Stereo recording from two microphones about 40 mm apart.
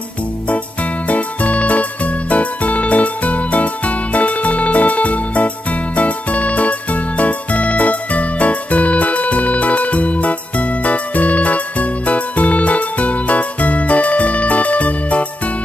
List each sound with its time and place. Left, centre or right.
1.0 s music: left